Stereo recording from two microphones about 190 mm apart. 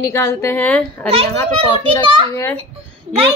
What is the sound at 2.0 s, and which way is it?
Speech, 25° right (ahead or behind).